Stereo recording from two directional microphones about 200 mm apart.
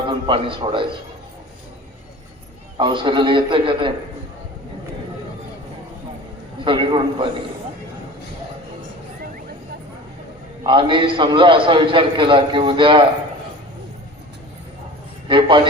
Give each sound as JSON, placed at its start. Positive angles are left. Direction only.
{"t": 0.1, "sound": "a man's voice", "side_deg": -25}
{"t": 2.7, "sound": "a man's voice", "side_deg": -25}
{"t": 6.7, "sound": "a man's voice", "side_deg": -25}
{"t": 10.6, "sound": "a man's voice", "side_deg": -25}
{"t": 15.3, "sound": "a man's voice", "side_deg": -25}